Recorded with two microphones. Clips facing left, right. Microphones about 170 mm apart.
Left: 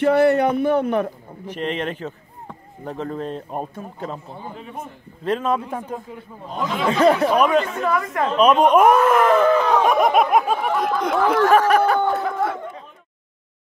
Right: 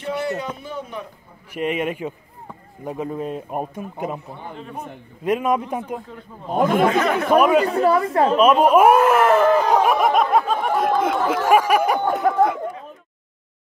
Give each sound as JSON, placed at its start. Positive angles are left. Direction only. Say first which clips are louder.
{"t": 0.0, "sound": "a man's voice", "louder": "left 10 dB", "side_deg": 60}
{"t": 1.5, "sound": "speech", "louder": "right 2 dB", "side_deg": -10}
{"t": 5.2, "sound": "speech", "louder": "right 2 dB", "side_deg": -10}
{"t": 6.5, "sound": "speech", "louder": "right 7 dB", "side_deg": -50}
{"t": 6.9, "sound": "speech", "louder": "left 4 dB", "side_deg": 30}
{"t": 7.3, "sound": "speech", "louder": "right 2 dB", "side_deg": -5}
{"t": 7.6, "sound": "a woman's voice", "louder": "right 5 dB", "side_deg": -35}
{"t": 8.4, "sound": "speech", "louder": "left 1 dB", "side_deg": -5}
{"t": 9.5, "sound": "a woman's voice", "louder": "right 1 dB", "side_deg": -40}
{"t": 9.8, "sound": "speech", "louder": "left 1 dB", "side_deg": -5}
{"t": 10.3, "sound": "speech", "louder": "even", "side_deg": 10}